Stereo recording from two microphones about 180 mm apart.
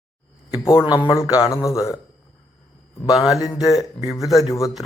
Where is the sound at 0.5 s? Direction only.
15° left (ahead or behind).